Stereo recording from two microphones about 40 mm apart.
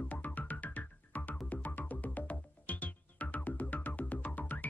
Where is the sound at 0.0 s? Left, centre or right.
Left.